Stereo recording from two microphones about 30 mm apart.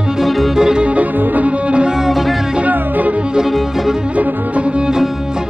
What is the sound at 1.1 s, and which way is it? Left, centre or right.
Music, right.